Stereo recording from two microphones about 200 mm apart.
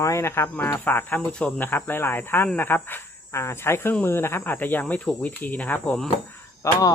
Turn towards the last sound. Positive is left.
turn(degrees=15)  # may be behind; listen again after turning